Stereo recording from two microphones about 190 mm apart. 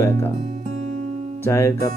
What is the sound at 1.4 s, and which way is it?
Speech, 15° left (ahead or behind).